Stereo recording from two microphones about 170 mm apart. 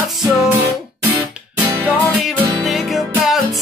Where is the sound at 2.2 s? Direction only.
Centre (ahead or behind).